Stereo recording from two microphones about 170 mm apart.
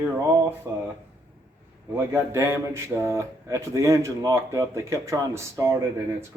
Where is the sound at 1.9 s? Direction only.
15° right (ahead or behind).